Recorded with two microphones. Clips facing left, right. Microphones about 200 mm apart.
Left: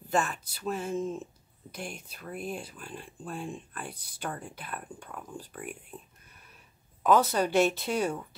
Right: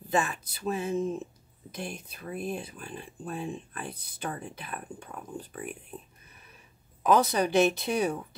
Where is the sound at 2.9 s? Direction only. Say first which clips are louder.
Right 2 dB; 5° right (ahead or behind).